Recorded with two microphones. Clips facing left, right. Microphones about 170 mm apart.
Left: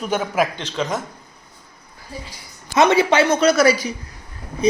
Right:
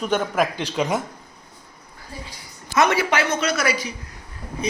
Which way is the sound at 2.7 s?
25° left (ahead or behind).